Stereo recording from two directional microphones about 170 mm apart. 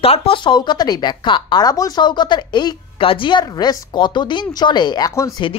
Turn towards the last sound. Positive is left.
turn(degrees=20)  # may be behind; listen again after turning